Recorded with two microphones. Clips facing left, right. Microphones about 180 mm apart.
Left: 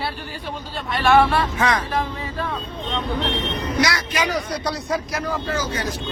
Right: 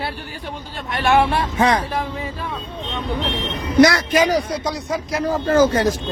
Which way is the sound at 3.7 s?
50° right (ahead or behind).